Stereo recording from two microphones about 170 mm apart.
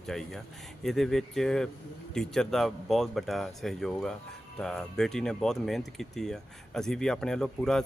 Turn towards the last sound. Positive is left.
turn(degrees=5)  # may be behind; listen again after turning